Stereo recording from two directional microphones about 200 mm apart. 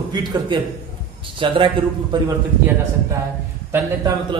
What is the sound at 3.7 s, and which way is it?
Speech, 20° right (ahead or behind).